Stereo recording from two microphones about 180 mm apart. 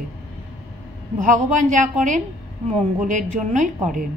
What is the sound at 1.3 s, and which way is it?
A woman's voice, 45° right (ahead or behind).